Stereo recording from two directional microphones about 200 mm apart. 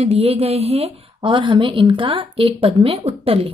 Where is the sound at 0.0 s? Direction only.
30° right (ahead or behind).